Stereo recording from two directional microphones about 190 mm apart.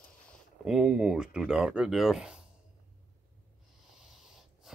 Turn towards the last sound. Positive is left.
turn(degrees=0)  # may be behind; listen again after turning